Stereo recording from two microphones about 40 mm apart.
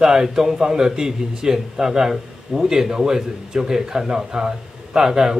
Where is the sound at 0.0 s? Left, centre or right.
Centre.